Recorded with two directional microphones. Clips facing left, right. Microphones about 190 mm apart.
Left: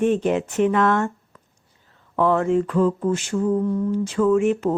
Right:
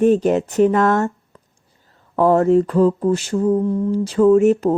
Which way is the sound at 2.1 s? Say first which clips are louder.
Right 5 dB; 40° right (ahead or behind).